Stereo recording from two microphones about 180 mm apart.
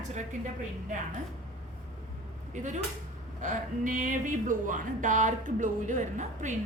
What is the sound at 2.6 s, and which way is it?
A woman's voice, 40° right (ahead or behind).